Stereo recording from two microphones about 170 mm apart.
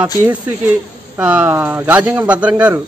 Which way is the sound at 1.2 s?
5° right (ahead or behind).